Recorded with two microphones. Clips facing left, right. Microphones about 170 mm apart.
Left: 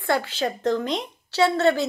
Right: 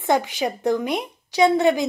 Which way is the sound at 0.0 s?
15° right (ahead or behind).